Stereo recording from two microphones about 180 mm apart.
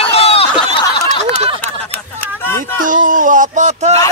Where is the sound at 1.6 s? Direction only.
10° left (ahead or behind).